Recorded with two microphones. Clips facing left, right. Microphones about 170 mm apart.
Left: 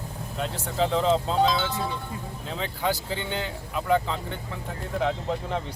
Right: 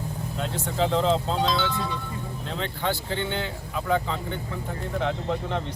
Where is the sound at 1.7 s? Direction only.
45° left (ahead or behind).